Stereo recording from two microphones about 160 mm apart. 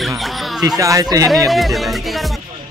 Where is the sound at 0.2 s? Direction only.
Centre (ahead or behind).